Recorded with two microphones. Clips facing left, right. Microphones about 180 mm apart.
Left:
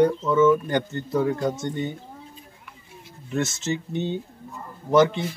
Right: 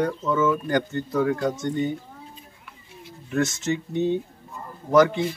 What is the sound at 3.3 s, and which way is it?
Speech, 25° left (ahead or behind).